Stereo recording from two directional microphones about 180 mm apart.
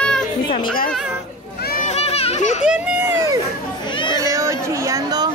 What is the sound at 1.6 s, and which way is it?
Children playing, 50° left (ahead or behind).